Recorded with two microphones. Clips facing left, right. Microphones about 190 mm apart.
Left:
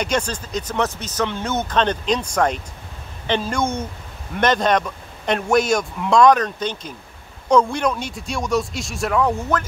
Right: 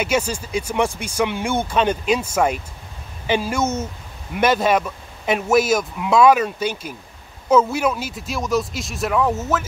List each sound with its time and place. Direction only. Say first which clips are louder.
0.0 s speech: right 1 dB; 5° right (ahead or behind)